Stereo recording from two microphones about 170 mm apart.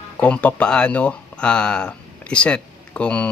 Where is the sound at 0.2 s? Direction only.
5° left (ahead or behind).